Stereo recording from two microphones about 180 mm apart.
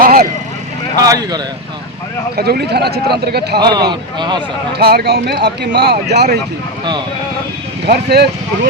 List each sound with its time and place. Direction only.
0.0 s vehicle: 55° right (ahead or behind)
0.9 s speech: 20° right (ahead or behind)
2.3 s a man's voice: 60° right (ahead or behind)
3.6 s speech: 25° right (ahead or behind)
4.8 s a man's voice: 60° right (ahead or behind)
7.9 s a man's voice: 65° right (ahead or behind)